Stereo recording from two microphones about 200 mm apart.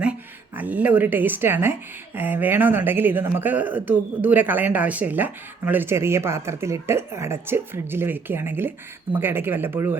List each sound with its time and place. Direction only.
0.0 s speech: 5° right (ahead or behind)